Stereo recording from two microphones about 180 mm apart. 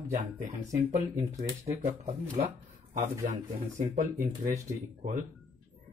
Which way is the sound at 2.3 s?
35° right (ahead or behind).